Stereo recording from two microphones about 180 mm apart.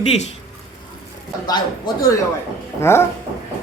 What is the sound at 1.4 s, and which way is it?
Speech, 20° left (ahead or behind).